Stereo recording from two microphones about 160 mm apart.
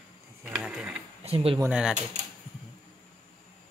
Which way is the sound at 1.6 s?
5° right (ahead or behind).